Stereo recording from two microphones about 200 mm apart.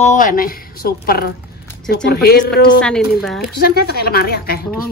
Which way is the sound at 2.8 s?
Centre (ahead or behind).